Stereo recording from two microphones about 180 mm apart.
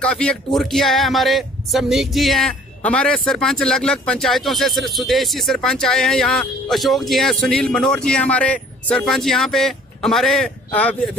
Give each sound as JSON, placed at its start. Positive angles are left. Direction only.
{"t": 0.0, "sound": "speech", "side_deg": 5}